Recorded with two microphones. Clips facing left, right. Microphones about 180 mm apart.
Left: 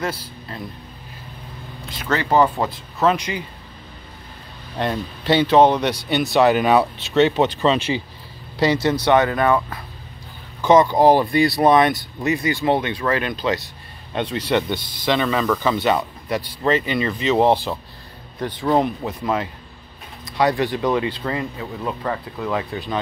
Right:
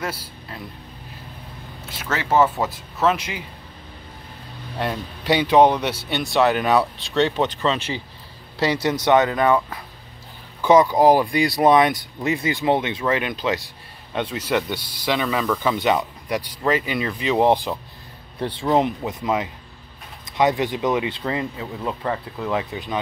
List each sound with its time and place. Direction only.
0.0 s speech: 10° right (ahead or behind)
1.9 s speech: 5° right (ahead or behind)
4.7 s speech: 10° right (ahead or behind)
7.4 s speech: 15° left (ahead or behind)
8.5 s speech: 10° right (ahead or behind)
18.4 s speech: 25° right (ahead or behind)